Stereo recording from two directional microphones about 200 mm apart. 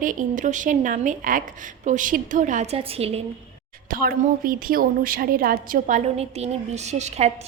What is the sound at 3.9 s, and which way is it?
A woman's voice, 45° right (ahead or behind).